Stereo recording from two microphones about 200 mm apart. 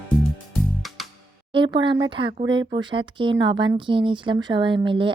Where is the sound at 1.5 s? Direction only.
25° right (ahead or behind).